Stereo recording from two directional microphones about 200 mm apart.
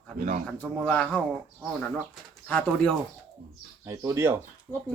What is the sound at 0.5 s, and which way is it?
Speech, 5° left (ahead or behind).